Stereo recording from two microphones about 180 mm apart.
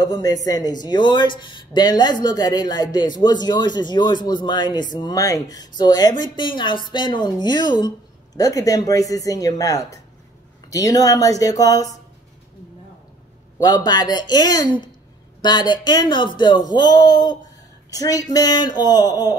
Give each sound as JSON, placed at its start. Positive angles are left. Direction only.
{"t": 0.0, "sound": "speech", "side_deg": 20}
{"t": 13.6, "sound": "speech", "side_deg": 20}